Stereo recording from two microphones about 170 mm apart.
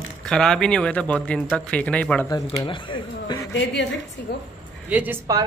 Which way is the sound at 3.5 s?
90° left.